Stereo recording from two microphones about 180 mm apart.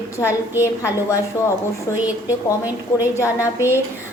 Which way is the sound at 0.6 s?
15° left (ahead or behind).